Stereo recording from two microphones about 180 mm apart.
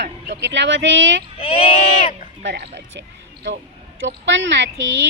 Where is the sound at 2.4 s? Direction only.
70° right (ahead or behind).